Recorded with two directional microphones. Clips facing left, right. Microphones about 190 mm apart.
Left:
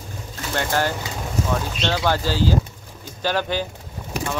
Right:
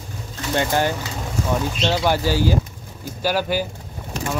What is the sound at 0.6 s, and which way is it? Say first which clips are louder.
Speech: right 2 dB; 15° right (ahead or behind).